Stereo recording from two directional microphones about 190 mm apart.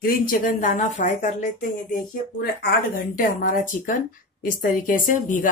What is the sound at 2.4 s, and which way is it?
Speech, 50° left (ahead or behind).